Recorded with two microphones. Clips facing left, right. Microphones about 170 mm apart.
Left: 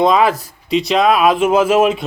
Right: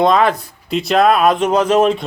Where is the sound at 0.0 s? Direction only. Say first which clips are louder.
Even; 5° left (ahead or behind).